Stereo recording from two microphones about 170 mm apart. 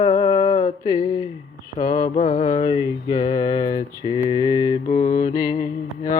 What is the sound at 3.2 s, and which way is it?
Mantra, 20° left (ahead or behind).